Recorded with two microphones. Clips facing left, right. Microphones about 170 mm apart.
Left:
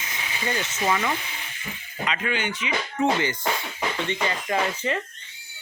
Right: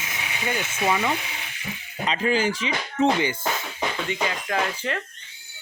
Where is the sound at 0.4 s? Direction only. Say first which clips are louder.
Right 1 dB; 10° right (ahead or behind).